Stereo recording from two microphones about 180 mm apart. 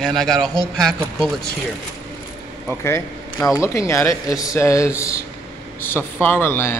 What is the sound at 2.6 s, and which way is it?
Speech, 15° left (ahead or behind).